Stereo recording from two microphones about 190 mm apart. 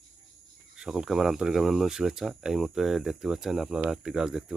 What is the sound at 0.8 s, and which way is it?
Speech, 5° right (ahead or behind).